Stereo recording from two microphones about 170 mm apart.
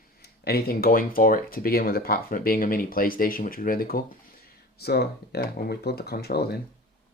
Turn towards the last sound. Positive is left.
turn(degrees=70)  # may be behind; listen again after turning